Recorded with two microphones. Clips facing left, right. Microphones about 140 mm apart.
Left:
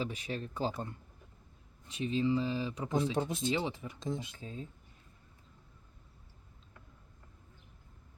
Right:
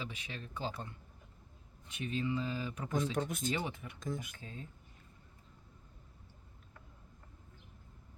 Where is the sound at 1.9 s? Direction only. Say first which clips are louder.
Left 6 dB; 30° left (ahead or behind).